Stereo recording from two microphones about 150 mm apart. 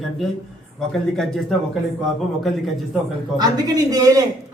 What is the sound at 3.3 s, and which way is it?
Speech, 25° right (ahead or behind).